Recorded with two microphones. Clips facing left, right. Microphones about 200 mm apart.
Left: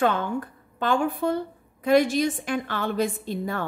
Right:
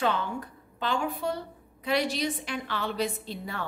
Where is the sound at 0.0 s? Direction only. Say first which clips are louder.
Left 5 dB; 50° left (ahead or behind).